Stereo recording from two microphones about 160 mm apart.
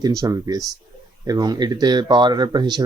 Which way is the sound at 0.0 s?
20° right (ahead or behind).